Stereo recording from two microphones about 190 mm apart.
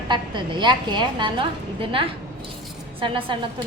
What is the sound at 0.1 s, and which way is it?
A woman's voice, 25° right (ahead or behind).